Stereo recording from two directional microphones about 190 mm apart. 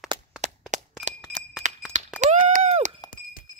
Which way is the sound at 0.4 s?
35° right (ahead or behind).